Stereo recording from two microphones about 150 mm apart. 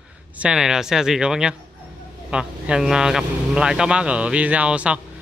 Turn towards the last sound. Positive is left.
turn(degrees=-10)  # may be behind; listen again after turning